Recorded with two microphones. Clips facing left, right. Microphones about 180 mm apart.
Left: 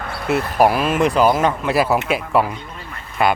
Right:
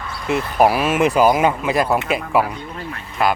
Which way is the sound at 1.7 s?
5° left (ahead or behind).